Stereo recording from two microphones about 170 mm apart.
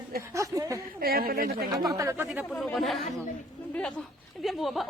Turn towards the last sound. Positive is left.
turn(degrees=0)  # may be behind; listen again after turning